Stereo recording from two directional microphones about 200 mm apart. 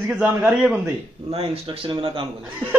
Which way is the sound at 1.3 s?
25° right (ahead or behind).